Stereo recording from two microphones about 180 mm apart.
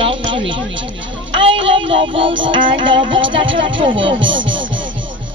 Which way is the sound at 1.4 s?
30° right (ahead or behind).